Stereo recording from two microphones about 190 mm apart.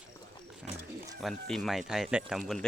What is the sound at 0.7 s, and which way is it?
Wild animals, 35° right (ahead or behind).